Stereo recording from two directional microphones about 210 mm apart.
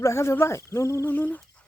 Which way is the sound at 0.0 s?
15° left (ahead or behind).